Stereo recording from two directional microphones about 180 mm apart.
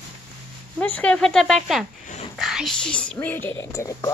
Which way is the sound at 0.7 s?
10° left (ahead or behind).